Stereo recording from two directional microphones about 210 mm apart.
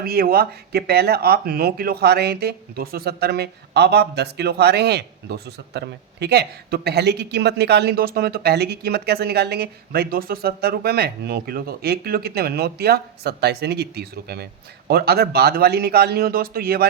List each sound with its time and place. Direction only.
0.0 s speech: 45° right (ahead or behind)